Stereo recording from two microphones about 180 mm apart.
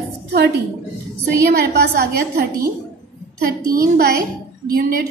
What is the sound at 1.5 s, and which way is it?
A woman's voice, 55° right (ahead or behind).